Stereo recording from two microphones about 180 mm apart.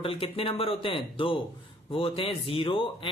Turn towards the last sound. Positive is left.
turn(degrees=30)  # may be behind; listen again after turning